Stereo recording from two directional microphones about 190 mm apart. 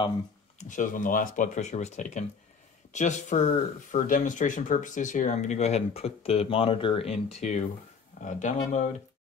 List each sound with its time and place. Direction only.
0.6 s speech: 40° left (ahead or behind)